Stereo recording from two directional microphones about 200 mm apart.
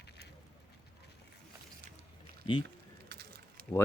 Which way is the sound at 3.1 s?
55° right (ahead or behind).